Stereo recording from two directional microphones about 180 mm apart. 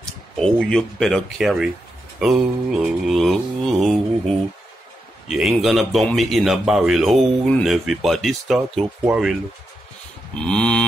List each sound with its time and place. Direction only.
0.0 s speech: 5° left (ahead or behind)
2.1 s mantra: centre (ahead or behind)
5.3 s speech: centre (ahead or behind)
10.3 s speech: 5° left (ahead or behind)